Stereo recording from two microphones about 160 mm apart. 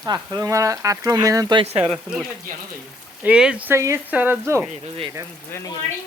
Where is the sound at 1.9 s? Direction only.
Centre (ahead or behind).